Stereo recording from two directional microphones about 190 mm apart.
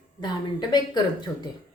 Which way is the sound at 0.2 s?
25° left (ahead or behind).